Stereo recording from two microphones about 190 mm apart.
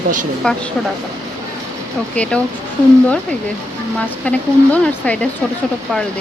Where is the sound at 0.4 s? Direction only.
5° left (ahead or behind).